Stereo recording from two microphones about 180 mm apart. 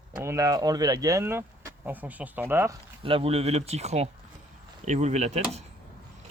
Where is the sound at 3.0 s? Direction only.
30° right (ahead or behind).